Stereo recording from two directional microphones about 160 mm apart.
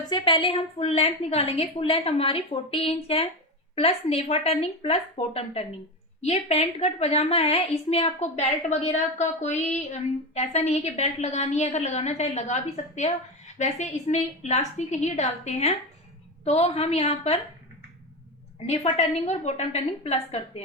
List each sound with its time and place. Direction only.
0.1 s a woman's voice: 30° left (ahead or behind)
18.6 s a woman's voice: 45° left (ahead or behind)